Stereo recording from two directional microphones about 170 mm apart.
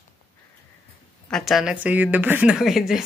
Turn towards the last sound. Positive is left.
turn(degrees=-5)  # may be behind; listen again after turning